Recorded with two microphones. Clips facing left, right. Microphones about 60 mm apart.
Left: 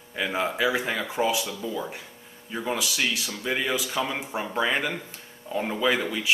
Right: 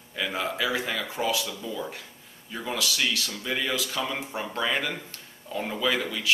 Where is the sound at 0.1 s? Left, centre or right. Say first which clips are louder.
Left 3 dB; centre.